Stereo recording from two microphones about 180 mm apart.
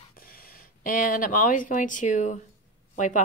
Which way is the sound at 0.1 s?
55° left (ahead or behind).